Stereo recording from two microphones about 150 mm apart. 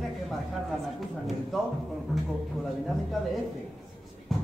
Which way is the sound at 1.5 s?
Centre (ahead or behind).